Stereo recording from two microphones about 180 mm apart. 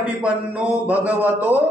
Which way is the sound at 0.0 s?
5° right (ahead or behind).